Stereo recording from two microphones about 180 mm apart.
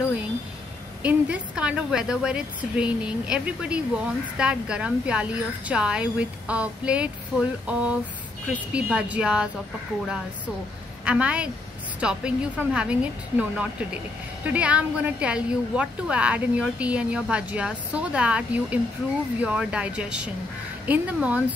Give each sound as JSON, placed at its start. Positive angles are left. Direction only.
{"t": 1.0, "sound": "a woman's voice", "side_deg": -5}